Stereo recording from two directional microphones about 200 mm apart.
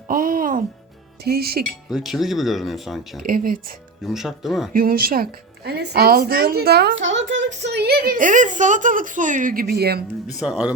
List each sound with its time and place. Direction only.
0.1 s music: 45° right (ahead or behind)
1.2 s speech: 50° right (ahead or behind)
1.9 s speech: centre (ahead or behind)
3.2 s speech: 45° right (ahead or behind)
4.0 s speech: centre (ahead or behind)
4.7 s speech: 45° right (ahead or behind)
10.3 s speech: 5° right (ahead or behind)